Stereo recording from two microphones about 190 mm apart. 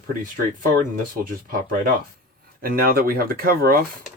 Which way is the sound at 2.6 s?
50° right (ahead or behind).